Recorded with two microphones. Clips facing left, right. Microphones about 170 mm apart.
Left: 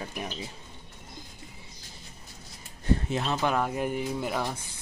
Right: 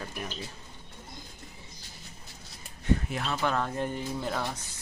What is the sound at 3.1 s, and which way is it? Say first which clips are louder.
Speech: left 3 dB; 20° left (ahead or behind).